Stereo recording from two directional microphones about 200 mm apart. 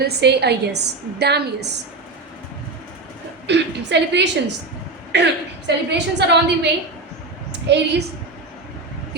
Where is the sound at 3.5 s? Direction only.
60° right (ahead or behind).